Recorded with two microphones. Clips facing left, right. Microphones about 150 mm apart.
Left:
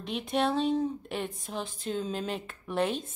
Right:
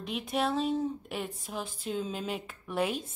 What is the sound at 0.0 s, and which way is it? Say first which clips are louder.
Speech: left 2 dB; 5° right (ahead or behind).